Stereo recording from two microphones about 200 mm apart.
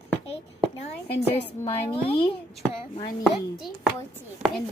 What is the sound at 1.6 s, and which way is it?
Speech, 30° left (ahead or behind).